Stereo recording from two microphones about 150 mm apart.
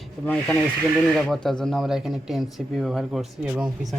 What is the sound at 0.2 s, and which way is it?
Speech, centre (ahead or behind).